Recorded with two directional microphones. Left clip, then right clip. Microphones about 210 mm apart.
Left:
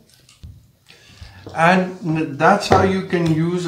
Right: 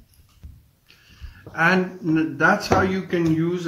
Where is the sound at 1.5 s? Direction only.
15° right (ahead or behind).